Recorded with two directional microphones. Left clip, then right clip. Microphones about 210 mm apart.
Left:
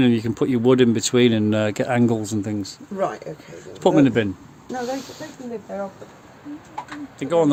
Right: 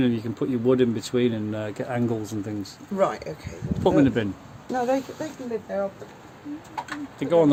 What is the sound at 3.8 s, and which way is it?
Speech, 30° left (ahead or behind).